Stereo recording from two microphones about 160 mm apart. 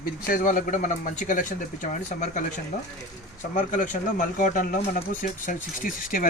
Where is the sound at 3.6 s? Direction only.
50° left (ahead or behind).